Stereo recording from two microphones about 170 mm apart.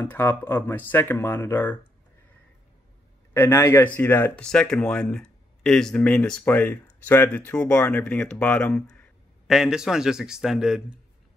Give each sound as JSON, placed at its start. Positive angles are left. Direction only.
{"t": 0.0, "sound": "speech", "side_deg": 10}
{"t": 3.3, "sound": "a man's voice", "side_deg": 15}